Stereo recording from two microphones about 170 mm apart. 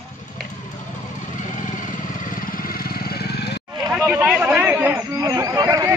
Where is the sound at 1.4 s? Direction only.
50° left (ahead or behind); by 3.6 s 70° left (ahead or behind).